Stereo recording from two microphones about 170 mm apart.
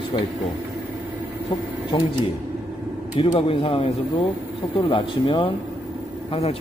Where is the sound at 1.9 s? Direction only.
30° left (ahead or behind).